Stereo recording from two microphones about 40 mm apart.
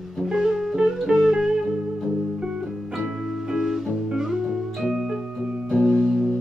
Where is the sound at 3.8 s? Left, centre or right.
Centre.